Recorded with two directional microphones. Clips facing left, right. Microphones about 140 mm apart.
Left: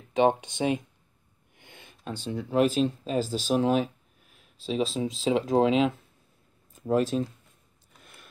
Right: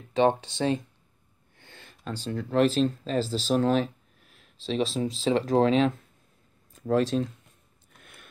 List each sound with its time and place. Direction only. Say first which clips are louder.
0.1 s speech: even; 15° left (ahead or behind)
5.0 s speech: right 1 dB; 10° left (ahead or behind)
8.0 s a sound: even; 55° right (ahead or behind)